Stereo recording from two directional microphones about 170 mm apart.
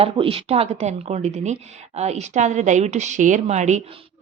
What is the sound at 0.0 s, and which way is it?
A woman's voice, 35° right (ahead or behind).